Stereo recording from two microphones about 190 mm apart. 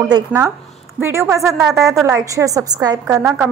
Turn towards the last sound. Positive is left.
turn(degrees=-5)  # may be behind; listen again after turning